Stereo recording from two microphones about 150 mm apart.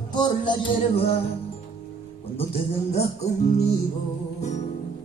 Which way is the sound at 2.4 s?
45° left (ahead or behind).